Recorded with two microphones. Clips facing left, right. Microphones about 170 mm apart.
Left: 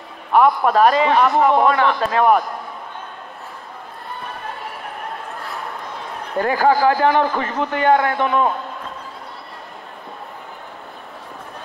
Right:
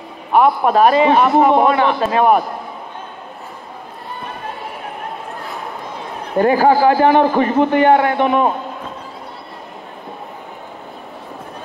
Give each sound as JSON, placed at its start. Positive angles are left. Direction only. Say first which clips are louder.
{"t": 0.3, "sound": "a man's voice", "louder": "right 2 dB", "side_deg": -15}
{"t": 6.6, "sound": "a man's voice", "louder": "right 1 dB", "side_deg": -15}